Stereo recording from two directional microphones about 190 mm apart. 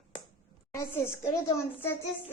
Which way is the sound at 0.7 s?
10° left (ahead or behind).